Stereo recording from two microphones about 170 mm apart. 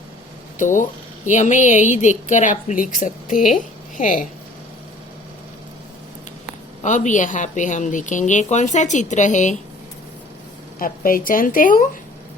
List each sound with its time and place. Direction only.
0.6 s speech: 50° left (ahead or behind)
6.8 s speech: 45° left (ahead or behind)
10.8 s a woman's voice: 55° left (ahead or behind)